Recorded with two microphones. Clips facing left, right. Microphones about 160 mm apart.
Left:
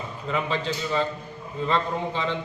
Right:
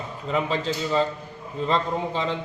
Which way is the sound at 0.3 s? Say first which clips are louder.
Right 2 dB; 35° right (ahead or behind).